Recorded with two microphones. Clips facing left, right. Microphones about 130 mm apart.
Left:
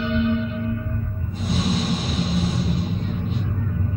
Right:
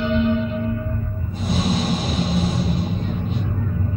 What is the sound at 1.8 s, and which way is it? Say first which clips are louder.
Vehicle: right 2 dB; 40° right (ahead or behind).